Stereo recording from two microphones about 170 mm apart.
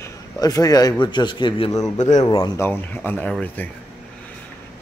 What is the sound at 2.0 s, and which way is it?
Speech, 45° left (ahead or behind).